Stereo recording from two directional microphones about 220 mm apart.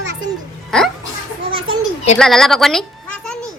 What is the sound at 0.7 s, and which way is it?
Speech, centre (ahead or behind).